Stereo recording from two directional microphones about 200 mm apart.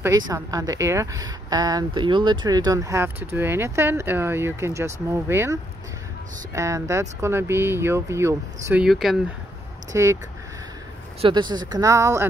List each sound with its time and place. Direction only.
0.0 s a woman's voice: 15° right (ahead or behind)
8.8 s speech: centre (ahead or behind)
9.9 s a woman's voice: 15° right (ahead or behind)
11.1 s speech: 25° right (ahead or behind)